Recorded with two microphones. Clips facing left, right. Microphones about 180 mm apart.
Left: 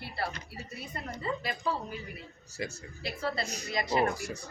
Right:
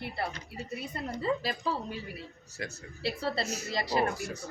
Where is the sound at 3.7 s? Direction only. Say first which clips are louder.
Left 2 dB; 35° right (ahead or behind).